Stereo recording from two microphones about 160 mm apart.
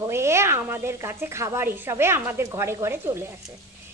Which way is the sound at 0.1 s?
15° right (ahead or behind).